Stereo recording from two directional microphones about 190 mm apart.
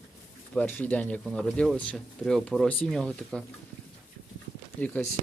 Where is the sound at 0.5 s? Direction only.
10° left (ahead or behind).